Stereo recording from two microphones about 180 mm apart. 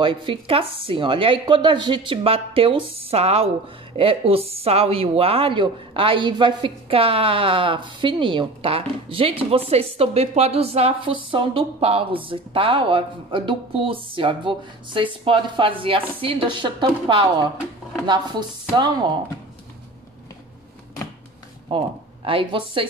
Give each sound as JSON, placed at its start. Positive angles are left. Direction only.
{"t": 0.0, "sound": "speech", "side_deg": -30}
{"t": 21.6, "sound": "speech", "side_deg": -30}